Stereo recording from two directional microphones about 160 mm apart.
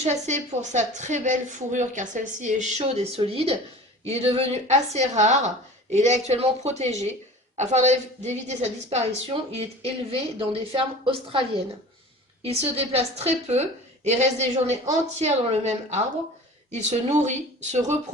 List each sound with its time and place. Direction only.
0.0 s a woman's voice: 45° right (ahead or behind)